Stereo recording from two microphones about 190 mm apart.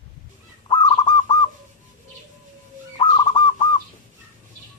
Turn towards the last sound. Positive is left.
turn(degrees=25)  # may be behind; listen again after turning